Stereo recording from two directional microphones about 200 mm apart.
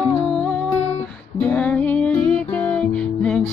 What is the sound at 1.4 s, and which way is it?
Music, 5° left (ahead or behind).